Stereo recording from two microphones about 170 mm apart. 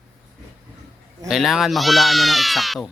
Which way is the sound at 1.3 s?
Centre (ahead or behind).